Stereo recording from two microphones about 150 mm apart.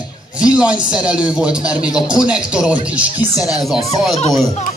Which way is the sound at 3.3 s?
25° left (ahead or behind).